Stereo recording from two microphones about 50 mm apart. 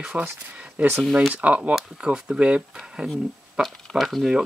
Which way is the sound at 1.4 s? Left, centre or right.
Right.